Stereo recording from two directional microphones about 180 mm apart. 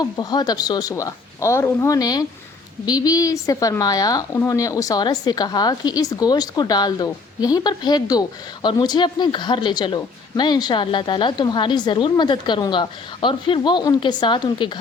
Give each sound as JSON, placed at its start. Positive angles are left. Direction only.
{"t": 0.0, "sound": "speech", "side_deg": 20}